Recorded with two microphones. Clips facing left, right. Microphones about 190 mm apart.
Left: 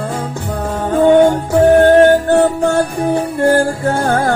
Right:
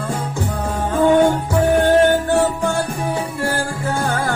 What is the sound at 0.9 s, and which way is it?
Music, 45° left (ahead or behind).